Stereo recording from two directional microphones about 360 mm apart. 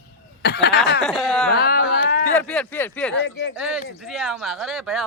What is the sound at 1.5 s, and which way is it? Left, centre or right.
Speech, left.